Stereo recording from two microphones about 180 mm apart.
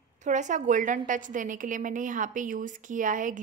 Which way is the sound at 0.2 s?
45° right (ahead or behind).